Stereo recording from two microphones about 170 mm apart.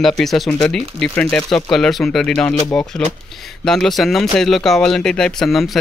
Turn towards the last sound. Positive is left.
turn(degrees=0)  # may be behind; listen again after turning